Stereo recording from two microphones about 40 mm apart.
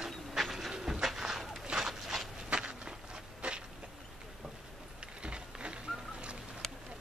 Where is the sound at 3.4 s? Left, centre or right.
Right.